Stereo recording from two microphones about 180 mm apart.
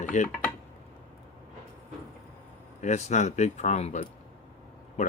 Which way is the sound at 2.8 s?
40° left (ahead or behind).